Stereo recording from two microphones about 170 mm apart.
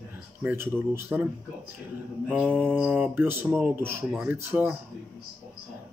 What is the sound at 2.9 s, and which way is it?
Speech, 10° right (ahead or behind).